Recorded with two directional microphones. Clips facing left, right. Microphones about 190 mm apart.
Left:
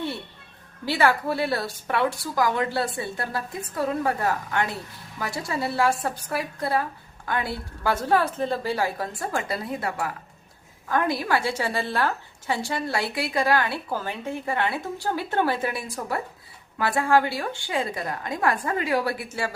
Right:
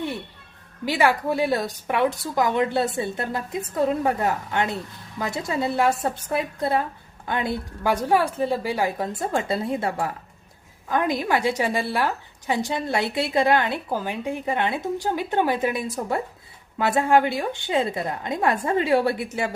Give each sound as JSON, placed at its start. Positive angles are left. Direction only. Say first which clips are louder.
{"t": 0.9, "sound": "a woman's voice", "louder": "right 1 dB", "side_deg": -15}
{"t": 10.8, "sound": "a woman's voice", "louder": "right 1 dB", "side_deg": -15}